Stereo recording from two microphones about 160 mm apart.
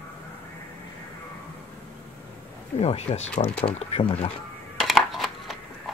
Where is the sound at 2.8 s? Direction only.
40° left (ahead or behind).